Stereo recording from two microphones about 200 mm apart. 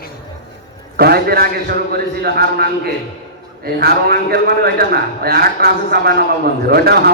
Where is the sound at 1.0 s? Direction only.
50° right (ahead or behind).